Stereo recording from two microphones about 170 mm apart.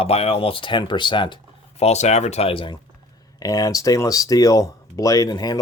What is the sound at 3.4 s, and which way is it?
Speech, 20° left (ahead or behind).